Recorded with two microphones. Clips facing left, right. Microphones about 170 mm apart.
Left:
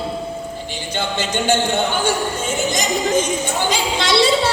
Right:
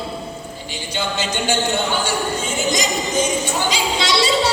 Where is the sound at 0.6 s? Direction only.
55° left (ahead or behind).